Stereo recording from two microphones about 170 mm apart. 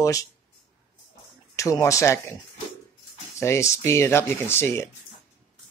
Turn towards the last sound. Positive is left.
turn(degrees=15)  # may be behind; listen again after turning